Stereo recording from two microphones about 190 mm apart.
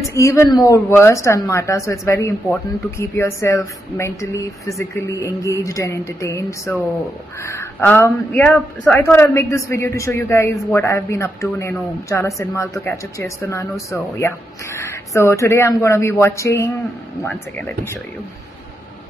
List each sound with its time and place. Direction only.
0.1 s speech: 15° left (ahead or behind)